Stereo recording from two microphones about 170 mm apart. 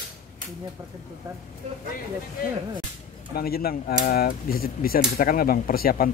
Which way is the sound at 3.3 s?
65° left (ahead or behind).